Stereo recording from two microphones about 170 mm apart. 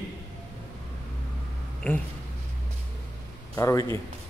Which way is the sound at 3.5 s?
20° left (ahead or behind).